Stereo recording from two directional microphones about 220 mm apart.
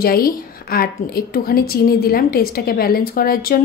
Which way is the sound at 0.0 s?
45° left (ahead or behind).